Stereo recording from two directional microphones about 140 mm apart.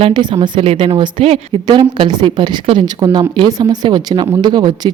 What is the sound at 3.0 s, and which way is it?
A woman's voice, 30° right (ahead or behind).